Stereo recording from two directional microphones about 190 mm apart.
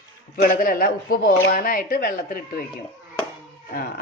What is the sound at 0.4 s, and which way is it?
Speech, 50° left (ahead or behind).